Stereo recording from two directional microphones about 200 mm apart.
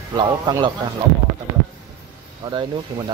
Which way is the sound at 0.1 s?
20° right (ahead or behind).